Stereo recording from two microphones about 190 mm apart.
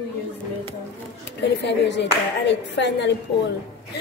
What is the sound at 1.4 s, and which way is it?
Speech, 65° left (ahead or behind).